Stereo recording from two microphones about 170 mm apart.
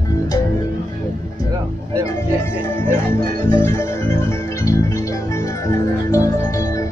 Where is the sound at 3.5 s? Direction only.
15° left (ahead or behind).